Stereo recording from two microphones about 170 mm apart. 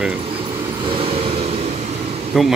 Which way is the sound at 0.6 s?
25° right (ahead or behind).